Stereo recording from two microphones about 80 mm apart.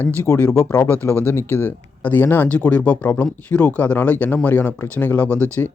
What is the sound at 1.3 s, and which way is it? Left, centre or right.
Speech, left.